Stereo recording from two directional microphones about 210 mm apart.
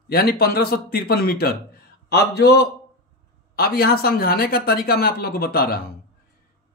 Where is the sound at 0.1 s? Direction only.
45° left (ahead or behind).